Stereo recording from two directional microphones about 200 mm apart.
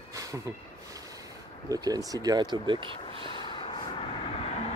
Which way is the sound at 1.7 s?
20° right (ahead or behind).